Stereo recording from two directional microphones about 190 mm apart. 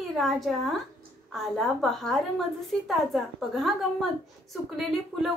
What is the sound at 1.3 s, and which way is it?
A woman's voice, centre (ahead or behind).